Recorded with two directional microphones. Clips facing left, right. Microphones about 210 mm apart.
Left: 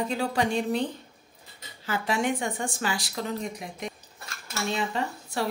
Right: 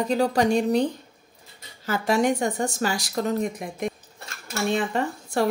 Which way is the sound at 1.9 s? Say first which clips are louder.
Right 5 dB; 40° right (ahead or behind).